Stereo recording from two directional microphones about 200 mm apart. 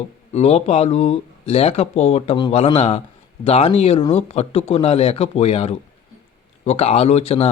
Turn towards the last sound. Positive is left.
turn(degrees=30)  # may be behind; listen again after turning